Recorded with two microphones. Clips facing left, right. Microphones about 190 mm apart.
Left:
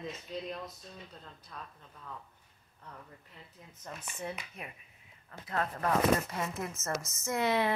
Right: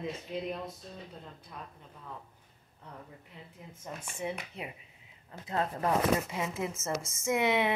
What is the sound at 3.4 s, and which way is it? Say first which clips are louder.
Speech: right 5 dB; 20° right (ahead or behind).